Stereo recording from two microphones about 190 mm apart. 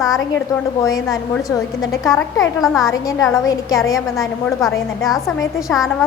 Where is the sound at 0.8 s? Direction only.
20° left (ahead or behind).